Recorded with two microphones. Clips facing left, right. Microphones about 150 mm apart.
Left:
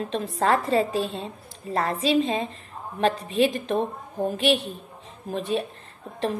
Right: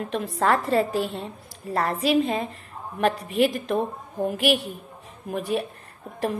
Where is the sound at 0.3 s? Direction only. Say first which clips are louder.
Even; 20° left (ahead or behind).